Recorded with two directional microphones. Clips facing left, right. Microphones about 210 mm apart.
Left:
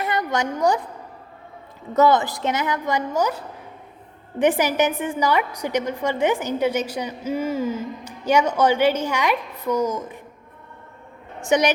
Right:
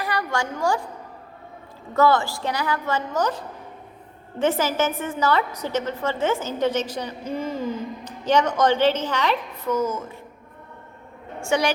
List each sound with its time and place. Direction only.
0.0 s a woman's voice: 20° left (ahead or behind)
1.9 s a woman's voice: 20° left (ahead or behind)
11.4 s a woman's voice: 20° left (ahead or behind)